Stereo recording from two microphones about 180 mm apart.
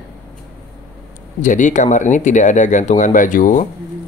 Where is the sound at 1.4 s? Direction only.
45° left (ahead or behind).